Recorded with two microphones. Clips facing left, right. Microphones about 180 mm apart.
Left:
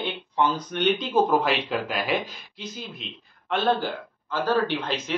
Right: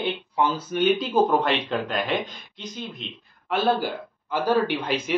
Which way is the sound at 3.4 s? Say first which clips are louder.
Right 1 dB; 10° right (ahead or behind).